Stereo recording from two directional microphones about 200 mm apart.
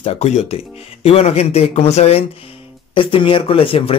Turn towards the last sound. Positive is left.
turn(degrees=25)  # may be behind; listen again after turning